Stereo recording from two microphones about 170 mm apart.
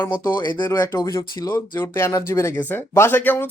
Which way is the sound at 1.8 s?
15° left (ahead or behind).